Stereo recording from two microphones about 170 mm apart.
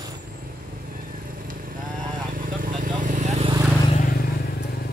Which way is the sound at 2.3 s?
55° right (ahead or behind).